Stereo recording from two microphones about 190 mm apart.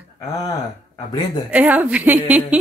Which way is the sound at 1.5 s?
10° right (ahead or behind).